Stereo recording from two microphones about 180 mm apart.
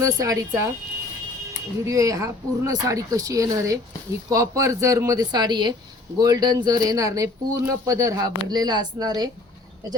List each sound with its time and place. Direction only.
0.0 s speech: 20° right (ahead or behind)
1.8 s speech: 15° right (ahead or behind)